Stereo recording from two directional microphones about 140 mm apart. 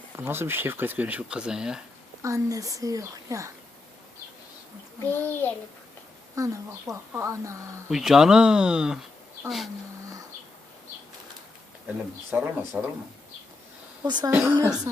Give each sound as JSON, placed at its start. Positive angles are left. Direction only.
{"t": 0.2, "sound": "speech", "side_deg": -15}
{"t": 2.2, "sound": "a woman's voice", "side_deg": -25}
{"t": 5.1, "sound": "a child's voice", "side_deg": 15}
{"t": 6.3, "sound": "a woman's voice", "side_deg": -25}
{"t": 7.9, "sound": "speech", "side_deg": 0}
{"t": 12.3, "sound": "speech", "side_deg": -10}
{"t": 14.0, "sound": "a woman's voice", "side_deg": -30}
{"t": 14.3, "sound": "a woman's voice", "side_deg": -20}